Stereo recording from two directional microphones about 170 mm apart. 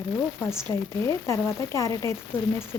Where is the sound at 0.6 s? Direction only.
15° left (ahead or behind).